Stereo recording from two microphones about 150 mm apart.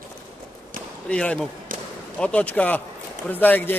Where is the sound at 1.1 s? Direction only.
5° left (ahead or behind).